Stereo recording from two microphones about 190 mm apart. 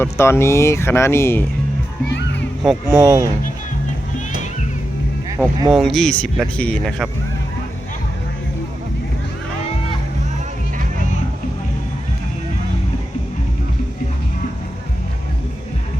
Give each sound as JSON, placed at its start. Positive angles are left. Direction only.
{"t": 0.0, "sound": "speech", "side_deg": 15}
{"t": 2.9, "sound": "speech", "side_deg": -20}
{"t": 5.7, "sound": "speech", "side_deg": 0}